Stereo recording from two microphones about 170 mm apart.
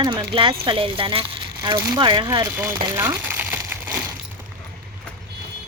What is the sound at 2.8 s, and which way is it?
Crumpling, 15° right (ahead or behind).